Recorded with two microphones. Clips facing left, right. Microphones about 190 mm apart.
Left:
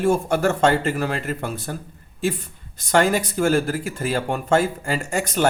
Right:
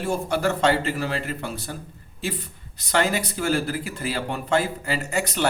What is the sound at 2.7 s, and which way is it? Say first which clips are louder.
Speech: left 4 dB; 50° left (ahead or behind).